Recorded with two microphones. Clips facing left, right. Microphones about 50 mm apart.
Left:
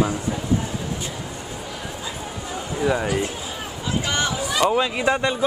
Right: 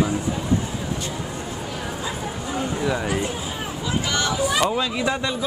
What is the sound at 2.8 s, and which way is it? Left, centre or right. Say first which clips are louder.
Speech: left 6 dB; centre.